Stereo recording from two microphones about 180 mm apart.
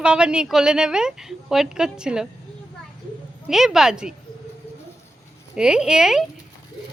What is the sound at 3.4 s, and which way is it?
Speech, centre (ahead or behind).